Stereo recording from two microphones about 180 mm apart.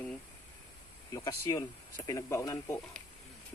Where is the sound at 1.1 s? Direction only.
20° left (ahead or behind).